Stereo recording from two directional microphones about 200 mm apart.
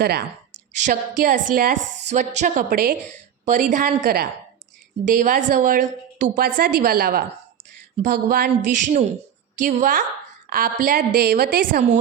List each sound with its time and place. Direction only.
0.0 s a woman's voice: 55° right (ahead or behind)
0.7 s a woman's voice: 40° right (ahead or behind)